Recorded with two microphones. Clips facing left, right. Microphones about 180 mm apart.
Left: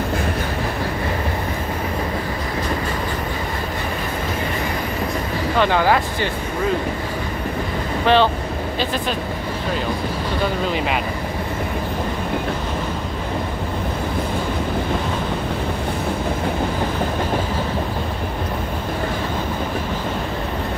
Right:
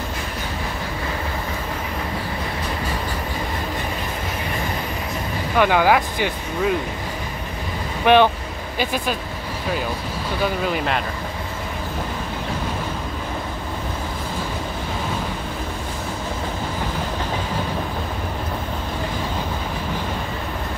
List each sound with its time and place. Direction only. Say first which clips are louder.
5.6 s speech: right 1 dB; 10° right (ahead or behind)
8.0 s speech: right 2 dB; 15° right (ahead or behind)